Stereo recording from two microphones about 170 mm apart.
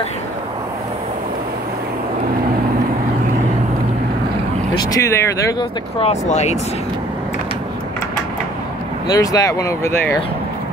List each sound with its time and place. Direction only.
4.7 s speech: 20° left (ahead or behind)
5.9 s speech: 40° left (ahead or behind)
9.0 s speech: 20° left (ahead or behind)